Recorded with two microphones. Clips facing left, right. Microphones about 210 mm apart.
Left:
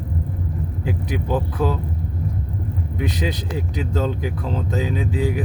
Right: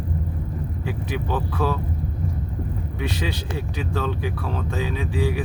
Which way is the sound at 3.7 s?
20° left (ahead or behind).